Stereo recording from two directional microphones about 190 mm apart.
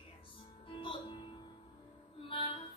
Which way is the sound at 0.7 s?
25° left (ahead or behind).